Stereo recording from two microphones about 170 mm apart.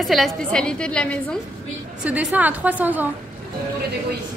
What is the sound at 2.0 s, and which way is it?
A woman's voice, 10° right (ahead or behind).